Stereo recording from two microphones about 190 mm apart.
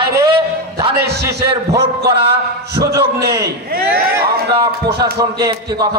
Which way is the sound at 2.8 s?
55° right (ahead or behind).